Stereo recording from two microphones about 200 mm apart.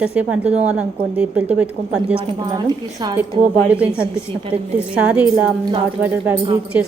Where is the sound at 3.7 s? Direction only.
5° right (ahead or behind).